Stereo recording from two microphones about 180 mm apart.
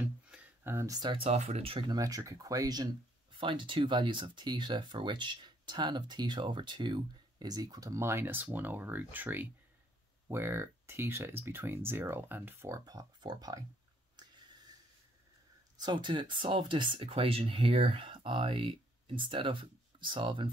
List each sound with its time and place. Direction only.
0.0 s speech: 10° right (ahead or behind)
15.8 s speech: 25° right (ahead or behind)